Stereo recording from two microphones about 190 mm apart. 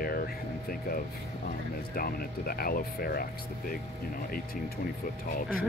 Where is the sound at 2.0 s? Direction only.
50° left (ahead or behind).